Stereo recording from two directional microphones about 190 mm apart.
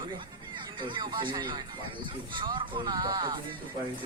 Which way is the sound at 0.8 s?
25° right (ahead or behind).